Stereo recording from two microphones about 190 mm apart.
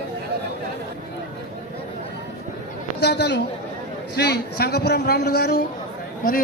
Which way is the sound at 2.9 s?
65° left (ahead or behind).